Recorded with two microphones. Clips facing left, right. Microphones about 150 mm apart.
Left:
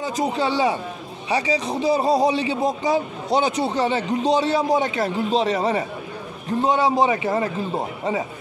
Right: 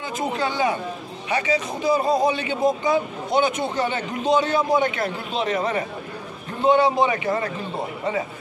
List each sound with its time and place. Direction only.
0.0 s speech: 35° left (ahead or behind)